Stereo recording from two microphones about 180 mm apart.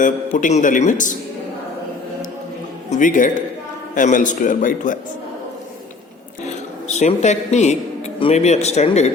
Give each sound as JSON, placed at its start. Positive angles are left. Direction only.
{"t": 0.0, "sound": "a man's voice", "side_deg": 45}
{"t": 2.9, "sound": "a man's voice", "side_deg": 45}
{"t": 6.4, "sound": "a sound", "side_deg": 40}
{"t": 8.2, "sound": "a man's voice", "side_deg": 35}